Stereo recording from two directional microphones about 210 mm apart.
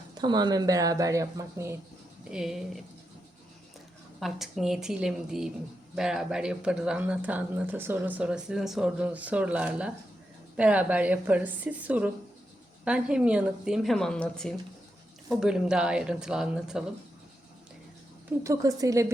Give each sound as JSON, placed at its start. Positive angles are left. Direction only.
{"t": 0.1, "sound": "speech", "side_deg": -20}
{"t": 2.3, "sound": "speech", "side_deg": 0}
{"t": 4.2, "sound": "speech", "side_deg": 0}
{"t": 18.4, "sound": "speech", "side_deg": -15}